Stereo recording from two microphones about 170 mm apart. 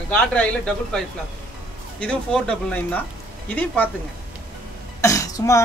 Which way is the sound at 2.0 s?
5° left (ahead or behind).